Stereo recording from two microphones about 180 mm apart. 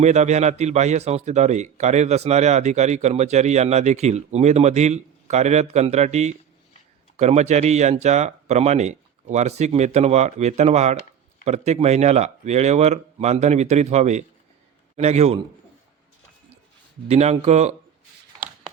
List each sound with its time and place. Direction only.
0.0 s speech: 40° right (ahead or behind)
17.1 s speech: 35° right (ahead or behind)